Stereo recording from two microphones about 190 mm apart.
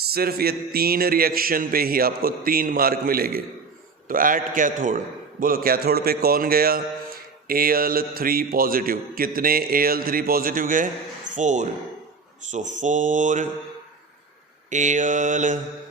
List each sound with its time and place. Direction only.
0.1 s a man's voice: 55° right (ahead or behind)
14.7 s speech: 40° right (ahead or behind)